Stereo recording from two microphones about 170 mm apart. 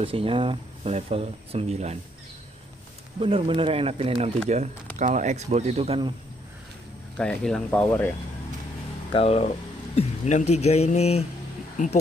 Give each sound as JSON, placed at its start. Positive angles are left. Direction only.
{"t": 0.0, "sound": "speech", "side_deg": -35}
{"t": 3.2, "sound": "speech", "side_deg": -30}
{"t": 7.2, "sound": "speech", "side_deg": 5}
{"t": 9.1, "sound": "speech", "side_deg": 35}